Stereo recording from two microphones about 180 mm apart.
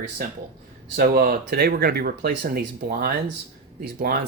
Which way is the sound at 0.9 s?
50° right (ahead or behind).